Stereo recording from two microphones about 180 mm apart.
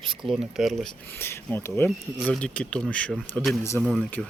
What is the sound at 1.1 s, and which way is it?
Speech, 10° left (ahead or behind).